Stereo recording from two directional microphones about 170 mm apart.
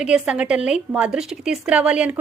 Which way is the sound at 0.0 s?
5° right (ahead or behind).